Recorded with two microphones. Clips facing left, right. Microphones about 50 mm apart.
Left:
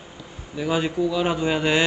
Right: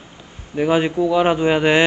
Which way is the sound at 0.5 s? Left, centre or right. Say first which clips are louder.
Right 6 dB; right.